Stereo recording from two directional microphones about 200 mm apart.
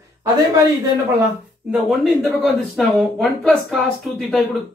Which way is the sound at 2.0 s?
Centre (ahead or behind).